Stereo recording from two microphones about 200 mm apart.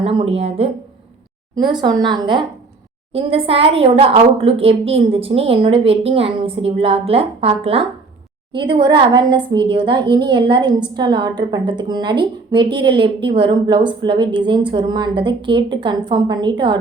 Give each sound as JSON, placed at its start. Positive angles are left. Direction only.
{"t": 0.0, "sound": "a woman's voice", "side_deg": -30}